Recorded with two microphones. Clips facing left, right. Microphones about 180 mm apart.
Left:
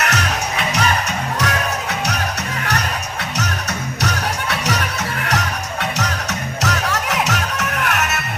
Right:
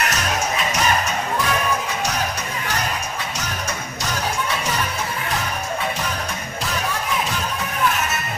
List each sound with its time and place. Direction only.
0.0 s music: 65° left (ahead or behind)
1.4 s music: 80° left
4.0 s music: 75° left (ahead or behind)